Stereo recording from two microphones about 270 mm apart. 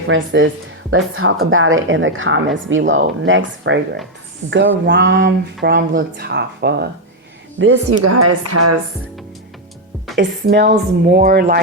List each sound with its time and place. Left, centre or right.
0.1 s a woman's voice: right
8.0 s speech: right
10.2 s speech: right